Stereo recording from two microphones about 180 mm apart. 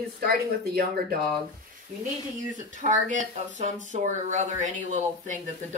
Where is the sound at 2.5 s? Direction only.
45° right (ahead or behind).